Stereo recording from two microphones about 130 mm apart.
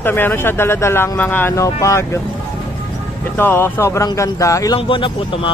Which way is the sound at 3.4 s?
15° left (ahead or behind).